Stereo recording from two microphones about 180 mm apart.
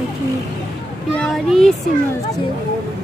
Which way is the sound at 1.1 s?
5° left (ahead or behind).